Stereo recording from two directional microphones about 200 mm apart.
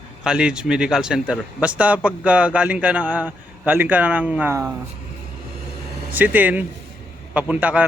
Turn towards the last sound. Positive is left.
turn(degrees=-5)  # may be behind; listen again after turning